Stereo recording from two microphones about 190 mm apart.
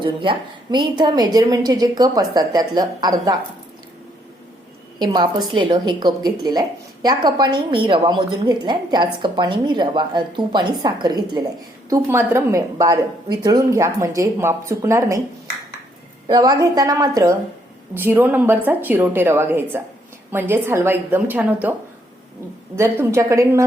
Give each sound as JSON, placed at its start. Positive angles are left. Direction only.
{"t": 0.0, "sound": "a woman's voice", "side_deg": -25}
{"t": 4.9, "sound": "a woman's voice", "side_deg": -20}
{"t": 16.2, "sound": "a woman's voice", "side_deg": -20}